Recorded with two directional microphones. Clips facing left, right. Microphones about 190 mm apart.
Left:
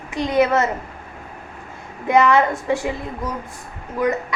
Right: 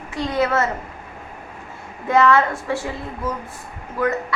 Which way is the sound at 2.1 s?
15° left (ahead or behind).